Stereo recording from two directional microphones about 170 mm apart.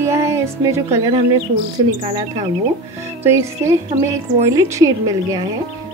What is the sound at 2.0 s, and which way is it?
Speech, 35° right (ahead or behind).